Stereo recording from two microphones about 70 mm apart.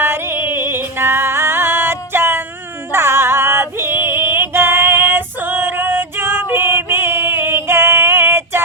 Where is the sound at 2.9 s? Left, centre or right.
Right.